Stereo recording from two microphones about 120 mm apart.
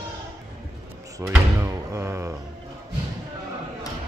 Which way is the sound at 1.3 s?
20° right (ahead or behind).